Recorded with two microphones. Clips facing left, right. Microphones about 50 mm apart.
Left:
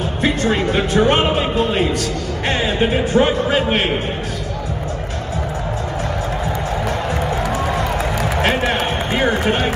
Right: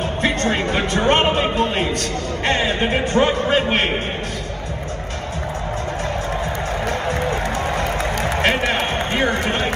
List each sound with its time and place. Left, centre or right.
0.2 s a man's voice: right
6.9 s music: right
9.3 s a man's voice: right